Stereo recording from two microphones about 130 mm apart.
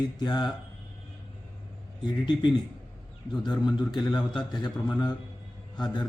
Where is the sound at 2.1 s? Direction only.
35° left (ahead or behind).